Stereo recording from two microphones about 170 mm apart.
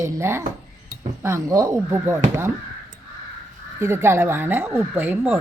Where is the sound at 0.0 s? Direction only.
15° right (ahead or behind).